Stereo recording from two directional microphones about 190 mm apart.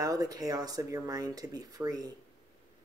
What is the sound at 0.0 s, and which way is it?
Speech, 20° right (ahead or behind).